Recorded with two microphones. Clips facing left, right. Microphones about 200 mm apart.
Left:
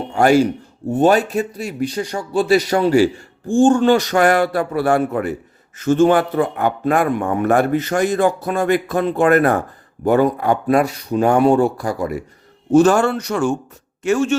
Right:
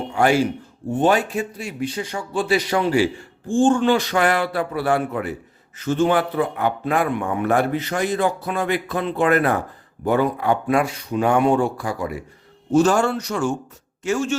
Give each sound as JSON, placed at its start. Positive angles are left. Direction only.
{"t": 0.1, "sound": "a man's voice", "side_deg": 45}
{"t": 12.7, "sound": "speech", "side_deg": 55}